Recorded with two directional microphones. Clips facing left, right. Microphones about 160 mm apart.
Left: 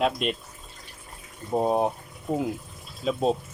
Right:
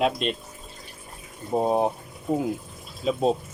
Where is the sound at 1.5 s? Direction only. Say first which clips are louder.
Right 1 dB; centre (ahead or behind).